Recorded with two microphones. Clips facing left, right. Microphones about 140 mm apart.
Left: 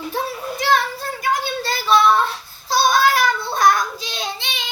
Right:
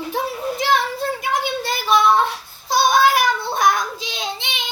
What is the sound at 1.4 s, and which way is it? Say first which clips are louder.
Child singing: right 1 dB; 20° right (ahead or behind).